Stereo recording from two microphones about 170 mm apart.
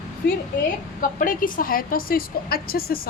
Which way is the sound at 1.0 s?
55° left (ahead or behind).